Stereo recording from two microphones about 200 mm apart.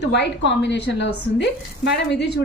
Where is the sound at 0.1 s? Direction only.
60° left (ahead or behind).